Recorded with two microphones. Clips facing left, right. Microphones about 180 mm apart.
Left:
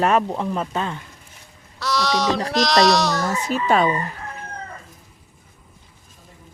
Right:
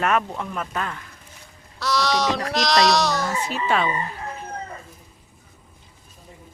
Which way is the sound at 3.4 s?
45° left (ahead or behind).